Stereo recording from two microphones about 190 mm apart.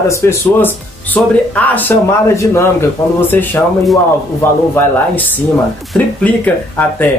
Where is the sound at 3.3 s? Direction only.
10° left (ahead or behind).